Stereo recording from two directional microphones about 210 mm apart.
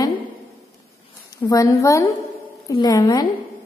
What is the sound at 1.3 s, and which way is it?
A woman's voice, 15° left (ahead or behind).